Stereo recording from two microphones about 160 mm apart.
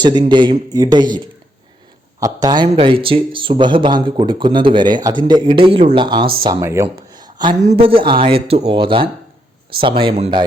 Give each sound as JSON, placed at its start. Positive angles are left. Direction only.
{"t": 0.0, "sound": "a man's voice", "side_deg": -30}
{"t": 2.2, "sound": "a man's voice", "side_deg": -25}
{"t": 6.8, "sound": "a sound", "side_deg": -25}
{"t": 7.6, "sound": "speech", "side_deg": -40}